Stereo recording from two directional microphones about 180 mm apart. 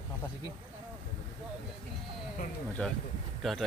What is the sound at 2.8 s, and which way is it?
Speech, 10° left (ahead or behind).